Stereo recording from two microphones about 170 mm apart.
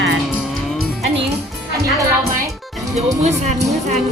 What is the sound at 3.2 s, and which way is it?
Speech, 40° right (ahead or behind).